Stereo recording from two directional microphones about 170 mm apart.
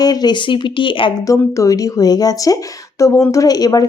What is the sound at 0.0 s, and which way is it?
A woman's voice, 25° left (ahead or behind).